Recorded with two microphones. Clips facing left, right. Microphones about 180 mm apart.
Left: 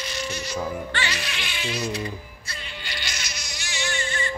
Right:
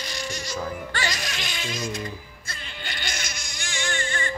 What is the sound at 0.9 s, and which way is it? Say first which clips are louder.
Speech: even; 40° right (ahead or behind).